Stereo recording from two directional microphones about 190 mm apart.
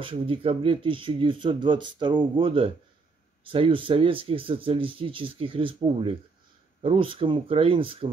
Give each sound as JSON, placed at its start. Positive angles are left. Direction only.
{"t": 0.0, "sound": "speech", "side_deg": -30}